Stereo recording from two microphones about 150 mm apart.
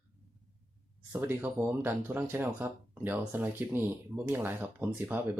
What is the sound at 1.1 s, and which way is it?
Speech, 15° right (ahead or behind).